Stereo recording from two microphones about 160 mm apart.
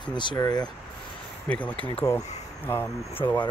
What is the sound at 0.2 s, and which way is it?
Speech, 25° left (ahead or behind).